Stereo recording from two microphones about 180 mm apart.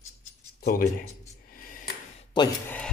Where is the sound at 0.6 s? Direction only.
60° left (ahead or behind).